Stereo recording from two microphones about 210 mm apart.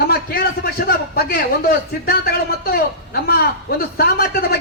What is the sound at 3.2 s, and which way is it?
A man's voice, 45° left (ahead or behind).